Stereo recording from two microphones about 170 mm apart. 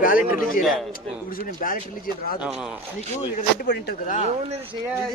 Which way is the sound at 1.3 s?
55° left (ahead or behind).